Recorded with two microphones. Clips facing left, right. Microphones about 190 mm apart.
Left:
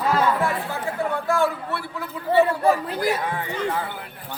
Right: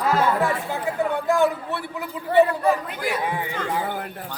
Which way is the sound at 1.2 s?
20° right (ahead or behind).